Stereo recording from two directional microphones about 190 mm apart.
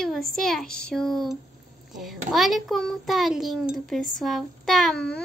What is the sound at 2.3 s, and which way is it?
Speech, centre (ahead or behind).